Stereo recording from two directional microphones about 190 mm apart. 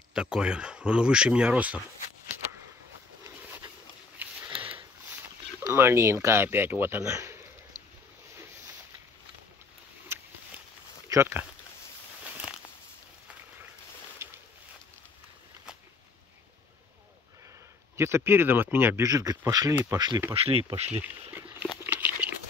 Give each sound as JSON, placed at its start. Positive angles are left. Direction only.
{"t": 0.1, "sound": "speech", "side_deg": -5}
{"t": 3.3, "sound": "a sound", "side_deg": -15}
{"t": 4.5, "sound": "sniff", "side_deg": -30}
{"t": 5.6, "sound": "speech", "side_deg": -15}
{"t": 10.1, "sound": "a sound", "side_deg": -10}
{"t": 11.1, "sound": "speech", "side_deg": -15}
{"t": 14.2, "sound": "a sound", "side_deg": -15}
{"t": 17.9, "sound": "speech", "side_deg": -15}
{"t": 20.3, "sound": "speech", "side_deg": -30}
{"t": 20.8, "sound": "speech", "side_deg": -10}
{"t": 21.8, "sound": "crumpling", "side_deg": -10}